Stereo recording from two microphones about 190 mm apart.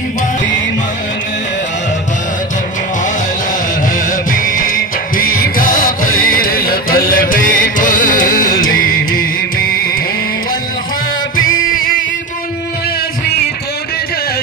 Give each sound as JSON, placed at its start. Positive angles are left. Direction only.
{"t": 3.9, "sound": "music", "side_deg": 45}
{"t": 11.6, "sound": "music", "side_deg": 45}